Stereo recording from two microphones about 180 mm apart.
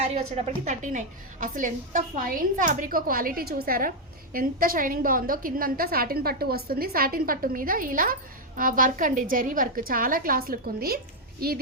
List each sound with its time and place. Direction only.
0.1 s a woman's voice: 35° right (ahead or behind); by 11.5 s 55° right (ahead or behind)